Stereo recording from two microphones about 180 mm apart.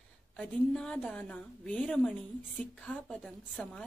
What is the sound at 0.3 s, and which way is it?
A woman's voice, 5° left (ahead or behind).